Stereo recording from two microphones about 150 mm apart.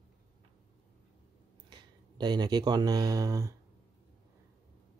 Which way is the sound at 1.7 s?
30° right (ahead or behind).